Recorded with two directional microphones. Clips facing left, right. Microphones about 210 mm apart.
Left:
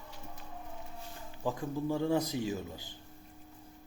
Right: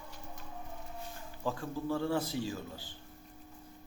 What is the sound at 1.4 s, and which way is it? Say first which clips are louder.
Speech: left 2 dB; 15° left (ahead or behind).